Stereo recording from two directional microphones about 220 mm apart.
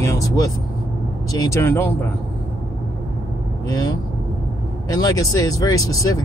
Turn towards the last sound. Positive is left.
turn(degrees=15)  # may be behind; listen again after turning